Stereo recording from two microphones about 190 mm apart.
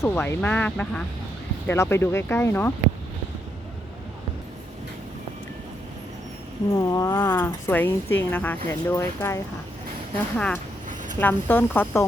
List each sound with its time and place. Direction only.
0.0 s speech: 15° left (ahead or behind)
6.7 s speech: 20° left (ahead or behind)